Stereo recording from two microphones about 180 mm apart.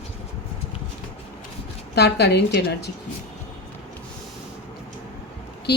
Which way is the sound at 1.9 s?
65° left (ahead or behind).